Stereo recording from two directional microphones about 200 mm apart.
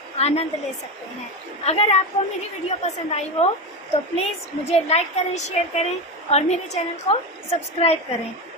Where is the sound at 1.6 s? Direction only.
30° left (ahead or behind).